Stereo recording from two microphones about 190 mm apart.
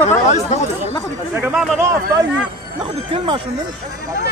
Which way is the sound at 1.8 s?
15° right (ahead or behind).